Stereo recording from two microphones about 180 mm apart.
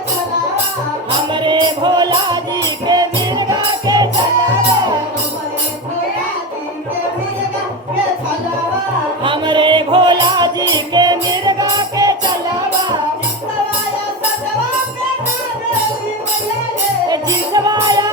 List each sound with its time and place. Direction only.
1.1 s music: 25° right (ahead or behind)
9.2 s music: 25° right (ahead or behind)
17.1 s music: 20° right (ahead or behind)